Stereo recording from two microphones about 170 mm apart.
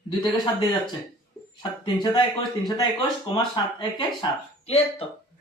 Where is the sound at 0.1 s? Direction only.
25° left (ahead or behind).